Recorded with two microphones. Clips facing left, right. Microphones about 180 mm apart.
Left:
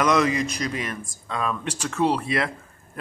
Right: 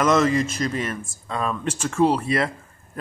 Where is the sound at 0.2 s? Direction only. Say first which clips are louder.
Right 2 dB; 50° right (ahead or behind).